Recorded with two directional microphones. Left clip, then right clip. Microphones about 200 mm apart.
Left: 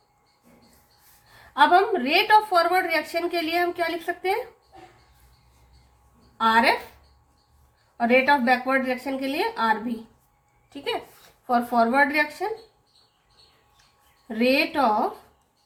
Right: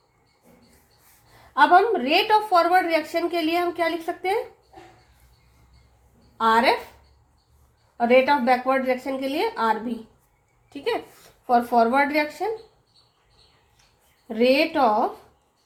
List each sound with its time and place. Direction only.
1.5 s a woman's voice: 10° right (ahead or behind)
6.3 s a woman's voice: 10° right (ahead or behind)
7.9 s a woman's voice: 10° right (ahead or behind)
14.3 s a woman's voice: 15° right (ahead or behind)